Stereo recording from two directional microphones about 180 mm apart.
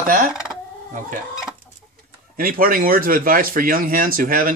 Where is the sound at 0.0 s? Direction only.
50° right (ahead or behind).